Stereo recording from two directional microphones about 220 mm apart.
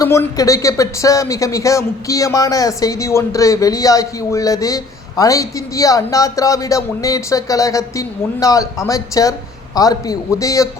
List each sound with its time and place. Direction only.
0.0 s speech: 15° left (ahead or behind)